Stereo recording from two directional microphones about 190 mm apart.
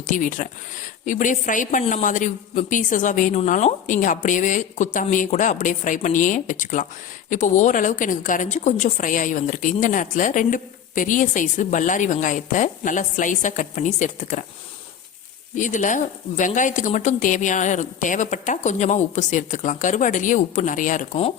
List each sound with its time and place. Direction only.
0.1 s a woman's voice: 45° left (ahead or behind)
15.5 s a woman's voice: 40° left (ahead or behind)